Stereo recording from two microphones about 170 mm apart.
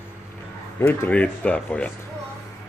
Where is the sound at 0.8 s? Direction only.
10° left (ahead or behind).